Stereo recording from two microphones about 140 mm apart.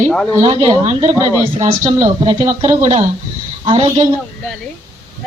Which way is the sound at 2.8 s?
50° right (ahead or behind).